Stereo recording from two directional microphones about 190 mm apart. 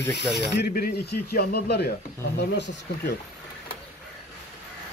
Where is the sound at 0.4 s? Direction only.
55° left (ahead or behind).